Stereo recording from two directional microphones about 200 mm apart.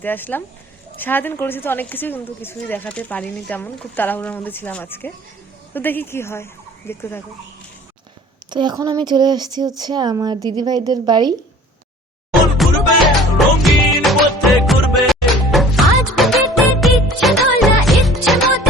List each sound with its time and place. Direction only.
0.0 s speech: 10° left (ahead or behind)
8.4 s speech: 20° right (ahead or behind)
12.6 s music: centre (ahead or behind)